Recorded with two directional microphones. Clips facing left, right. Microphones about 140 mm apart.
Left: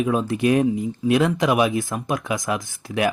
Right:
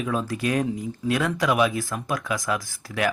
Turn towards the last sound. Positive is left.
turn(degrees=20)  # may be behind; listen again after turning